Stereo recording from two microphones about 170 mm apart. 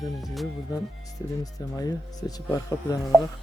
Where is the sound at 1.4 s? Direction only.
20° left (ahead or behind).